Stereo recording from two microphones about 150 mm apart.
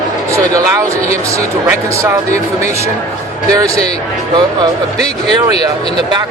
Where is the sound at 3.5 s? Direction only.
20° right (ahead or behind).